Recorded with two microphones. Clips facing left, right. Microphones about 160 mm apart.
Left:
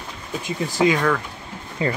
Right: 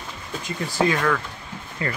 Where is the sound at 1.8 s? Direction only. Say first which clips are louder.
Left 5 dB; 25° left (ahead or behind).